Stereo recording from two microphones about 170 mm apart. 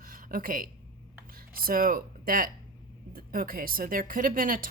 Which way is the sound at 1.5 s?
60° right (ahead or behind).